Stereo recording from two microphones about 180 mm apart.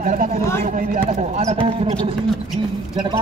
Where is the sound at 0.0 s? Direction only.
45° right (ahead or behind).